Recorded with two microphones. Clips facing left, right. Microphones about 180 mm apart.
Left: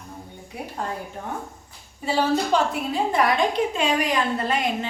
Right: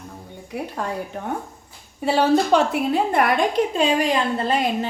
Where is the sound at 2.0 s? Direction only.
65° right (ahead or behind).